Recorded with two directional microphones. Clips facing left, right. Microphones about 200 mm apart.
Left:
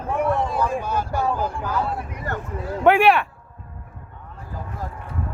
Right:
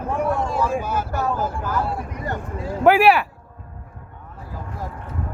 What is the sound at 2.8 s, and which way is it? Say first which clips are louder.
Speech: right 1 dB; centre (ahead or behind).